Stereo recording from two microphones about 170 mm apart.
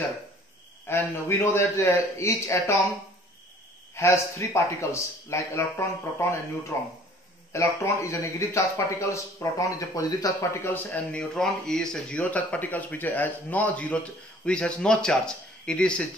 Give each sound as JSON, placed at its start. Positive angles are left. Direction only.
{"t": 0.8, "sound": "a man's voice", "side_deg": 15}
{"t": 3.9, "sound": "a man's voice", "side_deg": 15}